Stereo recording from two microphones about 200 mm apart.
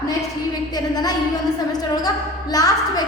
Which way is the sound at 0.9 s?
20° left (ahead or behind).